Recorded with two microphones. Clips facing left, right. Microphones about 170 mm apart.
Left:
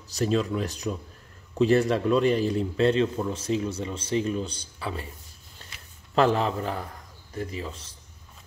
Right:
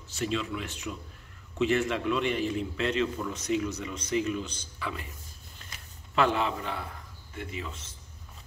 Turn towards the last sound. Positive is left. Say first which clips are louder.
# left 4 dB
turn(degrees=35)  # may be behind; listen again after turning